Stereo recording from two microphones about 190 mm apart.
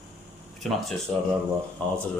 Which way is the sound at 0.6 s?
Centre (ahead or behind).